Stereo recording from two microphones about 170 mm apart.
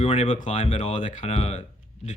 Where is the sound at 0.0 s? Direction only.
40° left (ahead or behind).